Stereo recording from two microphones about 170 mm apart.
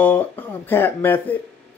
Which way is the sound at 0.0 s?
10° left (ahead or behind).